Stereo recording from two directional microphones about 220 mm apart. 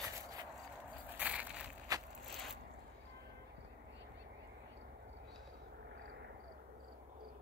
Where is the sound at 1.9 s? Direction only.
15° right (ahead or behind).